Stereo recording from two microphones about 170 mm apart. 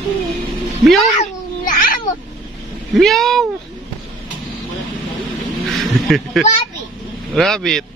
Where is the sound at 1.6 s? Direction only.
55° left (ahead or behind).